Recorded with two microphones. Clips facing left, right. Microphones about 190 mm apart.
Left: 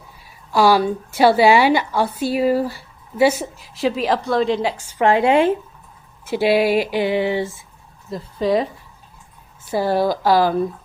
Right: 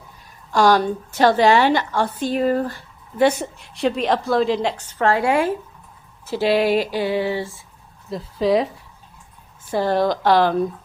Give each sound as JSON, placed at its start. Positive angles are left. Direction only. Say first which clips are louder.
{"t": 0.3, "sound": "a woman's voice", "louder": "left 1 dB", "side_deg": 5}
{"t": 6.2, "sound": "a woman's voice", "louder": "left 2 dB", "side_deg": 10}
{"t": 8.1, "sound": "speech", "louder": "right 1 dB", "side_deg": 0}